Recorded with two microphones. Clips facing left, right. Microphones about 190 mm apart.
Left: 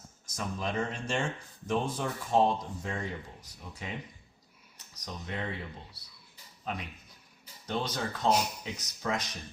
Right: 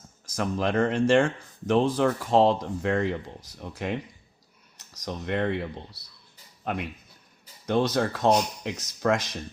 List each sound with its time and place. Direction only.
0.3 s speech: 75° right (ahead or behind)
8.3 s speech: 5° left (ahead or behind)
8.6 s speech: 65° right (ahead or behind)